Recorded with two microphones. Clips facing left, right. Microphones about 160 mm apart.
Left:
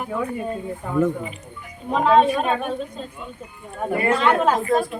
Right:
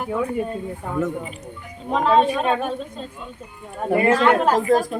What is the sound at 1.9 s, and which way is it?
Speech, centre (ahead or behind).